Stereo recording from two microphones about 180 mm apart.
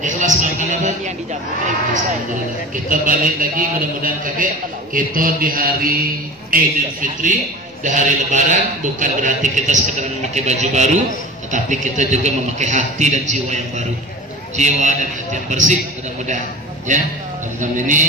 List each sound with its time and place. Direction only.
0.0 s a man's voice: 45° right (ahead or behind)
2.7 s a man's voice: 50° right (ahead or behind)
16.9 s a man's voice: 45° right (ahead or behind)